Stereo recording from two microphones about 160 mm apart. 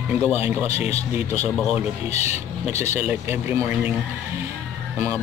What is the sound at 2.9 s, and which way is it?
A man's voice, 10° right (ahead or behind).